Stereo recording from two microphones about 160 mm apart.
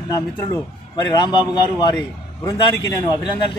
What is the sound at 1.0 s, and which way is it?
A man's voice, 30° left (ahead or behind).